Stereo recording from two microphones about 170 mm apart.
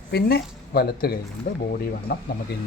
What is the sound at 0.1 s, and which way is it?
Speech, 65° left (ahead or behind).